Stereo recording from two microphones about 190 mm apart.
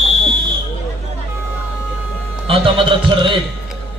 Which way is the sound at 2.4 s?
30° right (ahead or behind).